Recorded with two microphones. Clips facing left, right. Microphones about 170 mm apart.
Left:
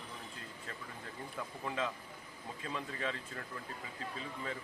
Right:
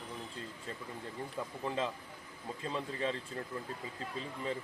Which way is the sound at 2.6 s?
30° right (ahead or behind).